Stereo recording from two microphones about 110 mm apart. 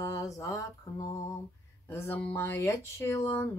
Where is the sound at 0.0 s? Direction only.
30° left (ahead or behind).